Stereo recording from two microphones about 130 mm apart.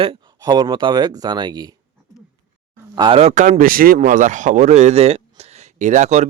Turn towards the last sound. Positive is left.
turn(degrees=-65)  # may be behind; listen again after turning